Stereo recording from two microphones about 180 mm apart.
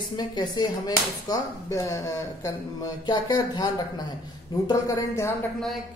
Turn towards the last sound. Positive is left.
turn(degrees=15)  # may be behind; listen again after turning